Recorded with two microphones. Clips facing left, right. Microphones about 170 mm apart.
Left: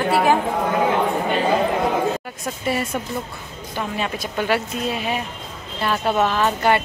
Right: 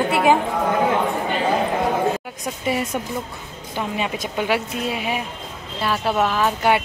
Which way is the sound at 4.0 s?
15° right (ahead or behind).